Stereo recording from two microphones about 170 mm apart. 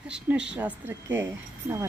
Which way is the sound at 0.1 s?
5° right (ahead or behind).